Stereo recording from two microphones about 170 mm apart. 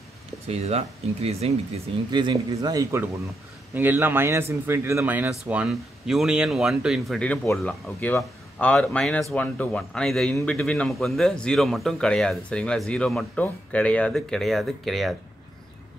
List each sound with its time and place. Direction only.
0.5 s speech: 40° right (ahead or behind)
2.0 s a man's voice: 25° right (ahead or behind); by 15.1 s centre (ahead or behind)